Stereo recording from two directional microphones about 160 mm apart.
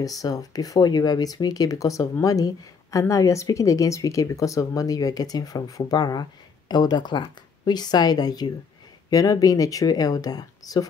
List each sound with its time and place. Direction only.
0.0 s speech: 20° left (ahead or behind)